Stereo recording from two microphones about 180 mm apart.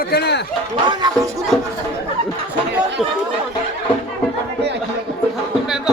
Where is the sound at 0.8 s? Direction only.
25° right (ahead or behind).